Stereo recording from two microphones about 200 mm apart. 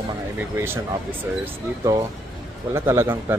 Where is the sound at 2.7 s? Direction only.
10° right (ahead or behind).